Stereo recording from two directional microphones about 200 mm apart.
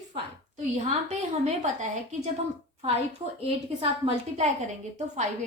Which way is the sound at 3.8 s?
30° right (ahead or behind).